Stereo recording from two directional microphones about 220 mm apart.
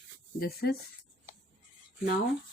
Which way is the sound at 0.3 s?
45° left (ahead or behind).